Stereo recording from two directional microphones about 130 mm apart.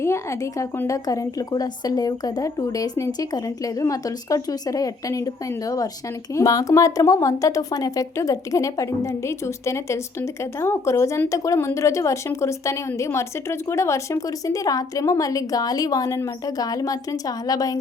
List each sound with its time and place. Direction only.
0.0 s speech: 20° left (ahead or behind)